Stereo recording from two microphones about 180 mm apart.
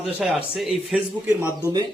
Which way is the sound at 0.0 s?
Centre (ahead or behind).